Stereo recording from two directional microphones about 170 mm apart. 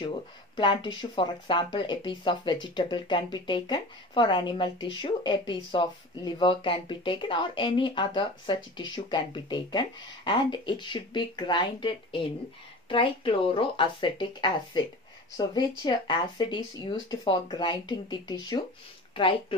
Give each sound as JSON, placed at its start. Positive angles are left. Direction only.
{"t": 0.6, "sound": "speech", "side_deg": 30}